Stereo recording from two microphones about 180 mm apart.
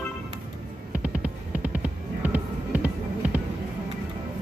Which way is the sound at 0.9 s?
10° right (ahead or behind).